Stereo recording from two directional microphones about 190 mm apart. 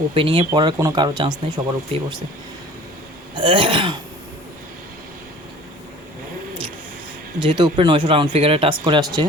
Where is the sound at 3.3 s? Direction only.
25° right (ahead or behind).